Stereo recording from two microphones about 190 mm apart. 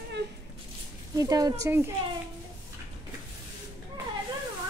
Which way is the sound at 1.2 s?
20° right (ahead or behind).